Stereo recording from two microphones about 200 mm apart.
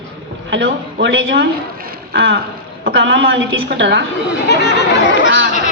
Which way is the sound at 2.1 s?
60° right (ahead or behind).